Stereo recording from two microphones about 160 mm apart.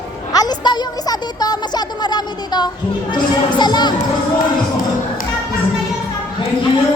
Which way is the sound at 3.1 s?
30° left (ahead or behind).